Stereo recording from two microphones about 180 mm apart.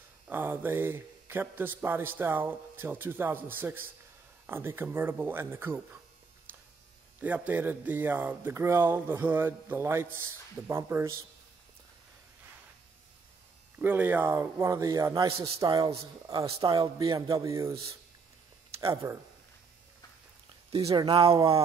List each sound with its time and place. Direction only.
0.3 s a man's voice: 10° right (ahead or behind)
7.2 s a man's voice: 10° right (ahead or behind)
13.7 s a man's voice: 10° right (ahead or behind)
15.2 s a man's voice: 30° right (ahead or behind)
19.0 s a man's voice: 15° right (ahead or behind)
20.9 s a man's voice: 30° right (ahead or behind)